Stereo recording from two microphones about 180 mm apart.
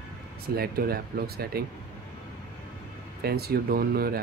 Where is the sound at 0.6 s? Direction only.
60° right (ahead or behind).